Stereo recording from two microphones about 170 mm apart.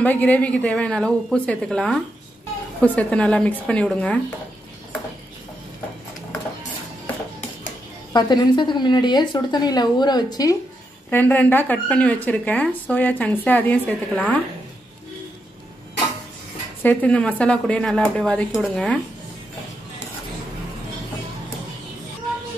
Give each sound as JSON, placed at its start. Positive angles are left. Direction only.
{"t": 0.0, "sound": "speech", "side_deg": 10}
{"t": 8.1, "sound": "a woman's voice", "side_deg": 25}
{"t": 11.1, "sound": "speech", "side_deg": 10}
{"t": 16.8, "sound": "speech", "side_deg": 10}